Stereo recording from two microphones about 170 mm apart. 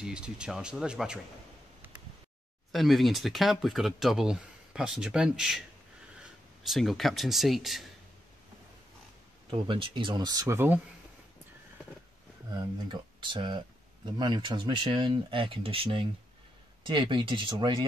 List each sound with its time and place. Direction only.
0.0 s speech: 5° right (ahead or behind)
2.7 s speech: centre (ahead or behind)
9.5 s speech: 30° right (ahead or behind); by 10.8 s 15° right (ahead or behind)
12.8 s speech: 30° right (ahead or behind)